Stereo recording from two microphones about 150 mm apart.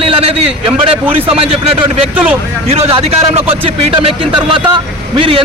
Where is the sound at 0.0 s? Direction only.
40° right (ahead or behind).